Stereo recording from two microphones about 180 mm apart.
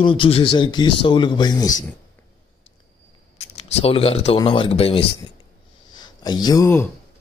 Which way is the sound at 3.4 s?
35° left (ahead or behind).